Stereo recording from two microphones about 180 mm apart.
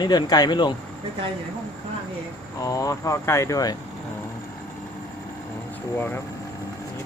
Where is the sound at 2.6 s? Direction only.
20° left (ahead or behind).